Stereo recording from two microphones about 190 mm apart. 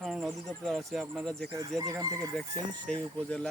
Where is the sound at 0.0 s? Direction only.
Centre (ahead or behind).